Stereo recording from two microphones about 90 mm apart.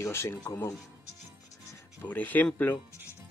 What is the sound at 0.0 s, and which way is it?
Speech, 30° left (ahead or behind).